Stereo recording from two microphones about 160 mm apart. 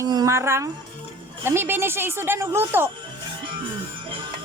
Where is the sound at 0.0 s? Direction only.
20° right (ahead or behind).